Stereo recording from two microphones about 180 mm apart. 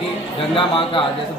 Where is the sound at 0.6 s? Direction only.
30° left (ahead or behind).